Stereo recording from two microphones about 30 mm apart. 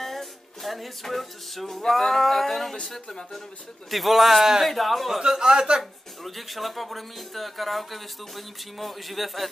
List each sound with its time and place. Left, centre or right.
0.0 s a sound: centre
1.0 s speech: centre
3.9 s speech: centre
5.4 s speech: right
5.8 s speech: centre